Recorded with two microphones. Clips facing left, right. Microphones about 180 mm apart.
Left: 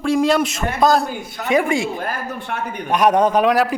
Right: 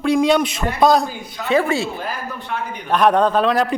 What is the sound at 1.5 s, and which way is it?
Speech, 15° left (ahead or behind).